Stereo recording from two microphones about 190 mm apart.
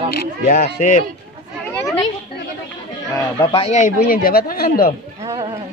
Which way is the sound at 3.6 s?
40° left (ahead or behind).